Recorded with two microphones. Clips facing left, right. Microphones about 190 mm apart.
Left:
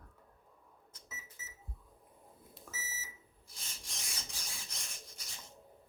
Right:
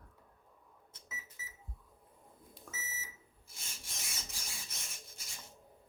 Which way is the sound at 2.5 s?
5° left (ahead or behind).